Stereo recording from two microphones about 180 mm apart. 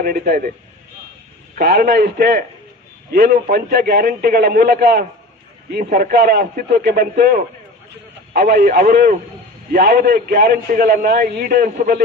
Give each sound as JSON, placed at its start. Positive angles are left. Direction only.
{"t": 0.0, "sound": "a man's voice", "side_deg": -50}
{"t": 1.5, "sound": "a man's voice", "side_deg": -55}